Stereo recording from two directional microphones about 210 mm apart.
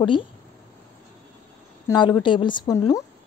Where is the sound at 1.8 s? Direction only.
20° left (ahead or behind).